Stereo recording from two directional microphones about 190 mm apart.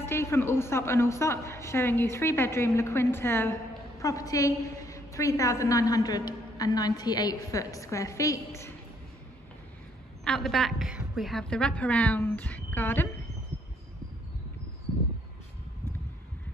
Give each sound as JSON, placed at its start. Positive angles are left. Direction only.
{"t": 0.0, "sound": "a woman's voice", "side_deg": 15}
{"t": 10.2, "sound": "a woman's voice", "side_deg": 5}